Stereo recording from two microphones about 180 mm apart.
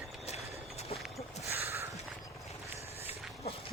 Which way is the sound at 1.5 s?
15° right (ahead or behind).